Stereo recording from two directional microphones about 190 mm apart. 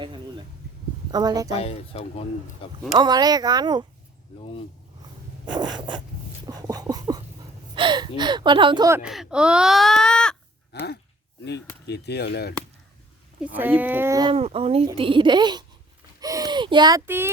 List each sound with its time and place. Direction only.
0.0 s a sound: 25° right (ahead or behind)
1.1 s speech: 20° right (ahead or behind)
1.5 s speech: 30° left (ahead or behind)
2.9 s speech: 20° right (ahead or behind)
5.5 s speech: 25° right (ahead or behind)
6.5 s a sound: 20° right (ahead or behind)
7.8 s speech: 25° right (ahead or behind)
9.0 s speech: centre (ahead or behind)
10.7 s a sound: 60° left (ahead or behind)
11.9 s speech: 60° left (ahead or behind)
13.4 s speech: 10° right (ahead or behind)
14.3 s speech: 30° right (ahead or behind); by 17.2 s 15° right (ahead or behind)